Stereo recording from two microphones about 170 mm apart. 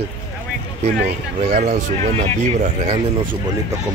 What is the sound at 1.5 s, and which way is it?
Speech, 45° right (ahead or behind).